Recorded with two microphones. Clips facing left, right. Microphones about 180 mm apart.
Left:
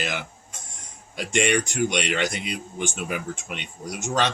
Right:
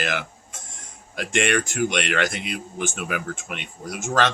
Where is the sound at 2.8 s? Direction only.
55° right (ahead or behind).